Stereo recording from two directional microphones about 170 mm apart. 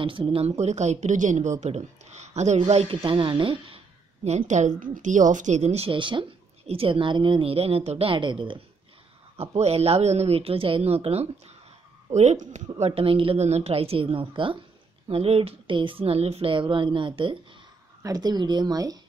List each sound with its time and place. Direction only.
0.0 s speech: 30° right (ahead or behind)
9.4 s speech: 40° right (ahead or behind); by 18.9 s 20° right (ahead or behind)